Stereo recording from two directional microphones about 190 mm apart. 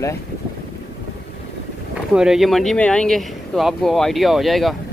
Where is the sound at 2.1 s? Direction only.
Centre (ahead or behind).